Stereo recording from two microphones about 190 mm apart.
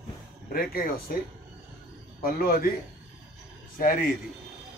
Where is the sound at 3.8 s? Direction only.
50° left (ahead or behind).